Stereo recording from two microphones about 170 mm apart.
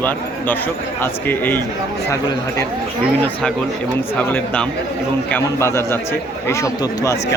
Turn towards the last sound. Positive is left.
turn(degrees=20)  # may be behind; listen again after turning